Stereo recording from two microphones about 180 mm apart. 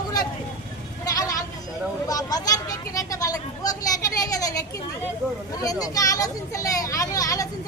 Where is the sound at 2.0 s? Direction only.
20° left (ahead or behind).